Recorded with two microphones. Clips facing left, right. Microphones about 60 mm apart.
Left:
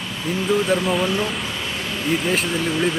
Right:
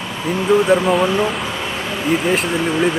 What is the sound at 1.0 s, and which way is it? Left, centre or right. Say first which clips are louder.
Speech: right 5 dB; centre.